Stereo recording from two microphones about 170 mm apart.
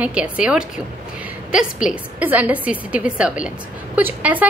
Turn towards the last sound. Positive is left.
turn(degrees=-10)  # may be behind; listen again after turning